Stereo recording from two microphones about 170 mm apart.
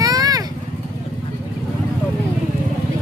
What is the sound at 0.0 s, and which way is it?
Vehicle, 20° right (ahead or behind).